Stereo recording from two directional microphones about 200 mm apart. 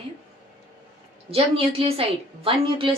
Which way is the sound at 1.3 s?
30° right (ahead or behind).